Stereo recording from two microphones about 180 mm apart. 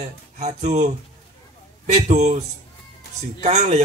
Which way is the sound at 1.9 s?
40° right (ahead or behind).